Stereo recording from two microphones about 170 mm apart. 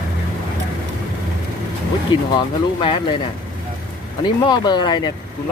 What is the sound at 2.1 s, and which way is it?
Speech, 25° left (ahead or behind).